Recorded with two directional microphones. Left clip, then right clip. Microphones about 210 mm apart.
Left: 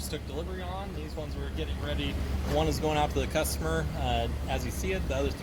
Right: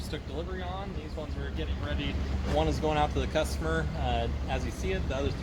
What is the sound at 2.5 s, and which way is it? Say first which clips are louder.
Speech: even; 45° left (ahead or behind).